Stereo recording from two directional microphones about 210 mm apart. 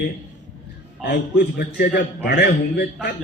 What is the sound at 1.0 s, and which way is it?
A man's voice, 50° left (ahead or behind).